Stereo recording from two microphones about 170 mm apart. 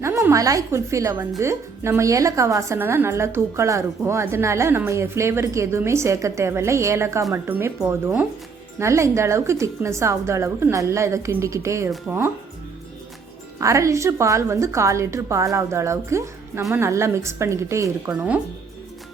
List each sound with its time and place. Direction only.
0.0 s a woman's voice: 15° right (ahead or behind)
13.6 s a woman's voice: 15° right (ahead or behind)
18.1 s a woman's voice: 5° right (ahead or behind)